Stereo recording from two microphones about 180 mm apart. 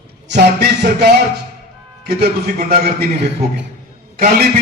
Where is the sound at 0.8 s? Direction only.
65° right (ahead or behind).